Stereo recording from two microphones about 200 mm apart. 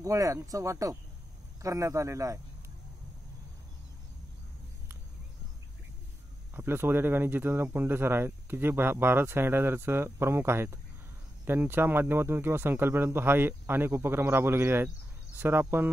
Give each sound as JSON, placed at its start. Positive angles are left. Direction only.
{"t": 0.0, "sound": "speech", "side_deg": -15}
{"t": 6.5, "sound": "speech", "side_deg": -10}